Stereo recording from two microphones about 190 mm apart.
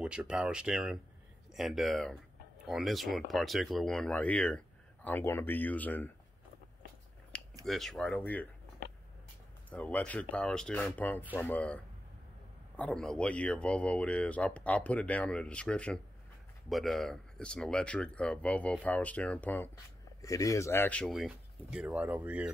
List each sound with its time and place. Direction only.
0.0 s speech: 5° right (ahead or behind)
7.6 s speech: centre (ahead or behind)
9.7 s speech: 5° left (ahead or behind); by 22.5 s 10° right (ahead or behind)